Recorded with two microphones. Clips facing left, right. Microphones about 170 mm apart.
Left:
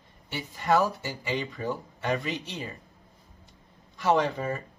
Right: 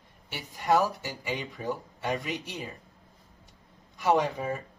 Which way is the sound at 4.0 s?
15° right (ahead or behind).